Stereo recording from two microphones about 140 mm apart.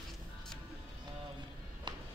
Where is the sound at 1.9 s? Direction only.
30° right (ahead or behind).